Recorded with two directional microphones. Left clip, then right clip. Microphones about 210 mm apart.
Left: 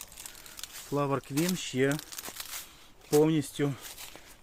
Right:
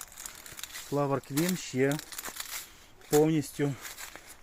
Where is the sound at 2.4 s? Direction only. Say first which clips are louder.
Right 1 dB; 25° right (ahead or behind).